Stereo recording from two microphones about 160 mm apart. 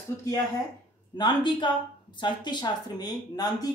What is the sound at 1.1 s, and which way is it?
Speech, 30° left (ahead or behind).